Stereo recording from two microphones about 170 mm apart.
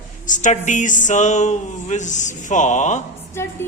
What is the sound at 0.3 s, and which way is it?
Speech, 45° left (ahead or behind).